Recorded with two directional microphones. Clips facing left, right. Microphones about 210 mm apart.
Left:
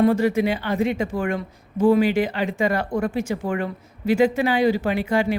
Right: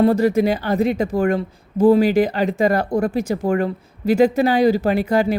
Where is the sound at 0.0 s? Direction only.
40° right (ahead or behind).